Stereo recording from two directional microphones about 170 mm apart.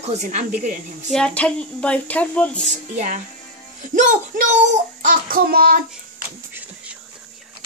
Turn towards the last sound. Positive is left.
turn(degrees=-5)  # may be behind; listen again after turning